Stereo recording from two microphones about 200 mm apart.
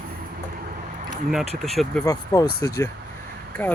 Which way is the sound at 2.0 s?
20° left (ahead or behind).